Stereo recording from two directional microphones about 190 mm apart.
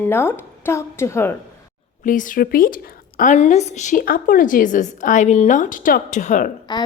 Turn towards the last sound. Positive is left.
turn(degrees=20)  # may be behind; listen again after turning